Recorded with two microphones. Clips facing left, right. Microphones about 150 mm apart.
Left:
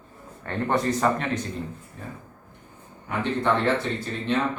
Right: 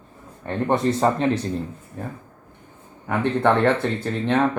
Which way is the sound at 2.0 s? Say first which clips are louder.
Right 8 dB; 55° right (ahead or behind).